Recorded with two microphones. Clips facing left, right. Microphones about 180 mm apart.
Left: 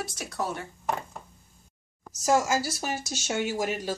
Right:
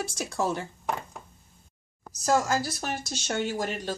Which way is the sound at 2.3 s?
10° left (ahead or behind).